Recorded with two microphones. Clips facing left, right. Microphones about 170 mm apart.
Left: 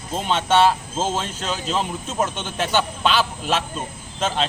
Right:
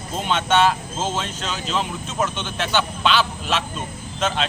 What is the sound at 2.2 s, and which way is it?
A man's voice, 40° left (ahead or behind).